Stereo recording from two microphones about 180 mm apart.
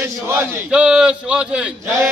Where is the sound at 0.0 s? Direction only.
10° right (ahead or behind).